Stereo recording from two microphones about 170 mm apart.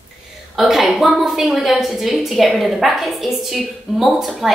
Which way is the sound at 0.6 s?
Centre (ahead or behind).